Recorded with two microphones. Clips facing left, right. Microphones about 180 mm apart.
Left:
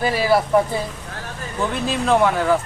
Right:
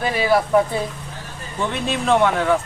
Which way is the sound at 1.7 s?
Centre (ahead or behind).